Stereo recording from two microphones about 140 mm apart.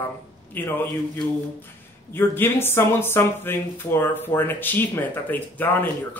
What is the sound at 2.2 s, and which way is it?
Speech, 15° left (ahead or behind).